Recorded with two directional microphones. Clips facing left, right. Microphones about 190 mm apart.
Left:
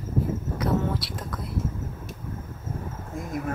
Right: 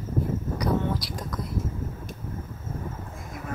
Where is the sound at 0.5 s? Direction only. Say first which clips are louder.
Even; centre (ahead or behind).